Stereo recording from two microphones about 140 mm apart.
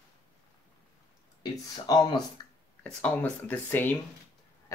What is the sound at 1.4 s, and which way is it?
Speech, 30° left (ahead or behind).